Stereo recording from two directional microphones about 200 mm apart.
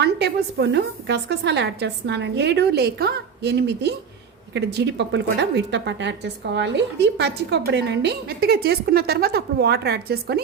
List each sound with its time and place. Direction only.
0.0 s a woman's voice: 55° right (ahead or behind)